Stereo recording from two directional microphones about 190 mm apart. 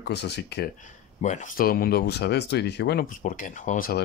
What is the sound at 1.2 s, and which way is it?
Speech, 45° left (ahead or behind).